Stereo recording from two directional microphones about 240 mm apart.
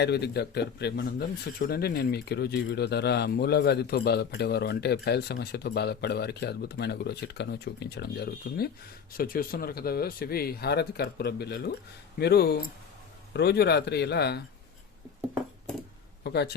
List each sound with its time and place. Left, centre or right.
0.0 s speech: left
16.2 s speech: left